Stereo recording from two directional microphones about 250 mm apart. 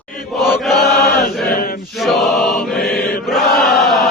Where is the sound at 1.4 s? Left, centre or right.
Left.